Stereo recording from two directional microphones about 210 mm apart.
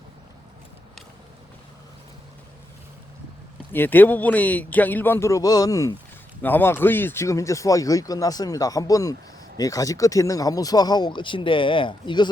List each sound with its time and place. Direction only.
3.7 s speech: 10° left (ahead or behind)